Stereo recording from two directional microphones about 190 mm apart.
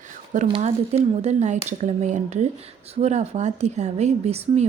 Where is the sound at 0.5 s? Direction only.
35° right (ahead or behind).